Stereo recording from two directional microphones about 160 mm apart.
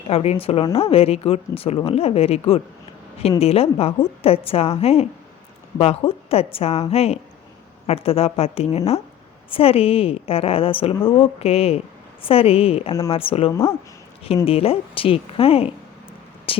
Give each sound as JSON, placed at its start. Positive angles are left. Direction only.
{"t": 0.1, "sound": "speech", "side_deg": 40}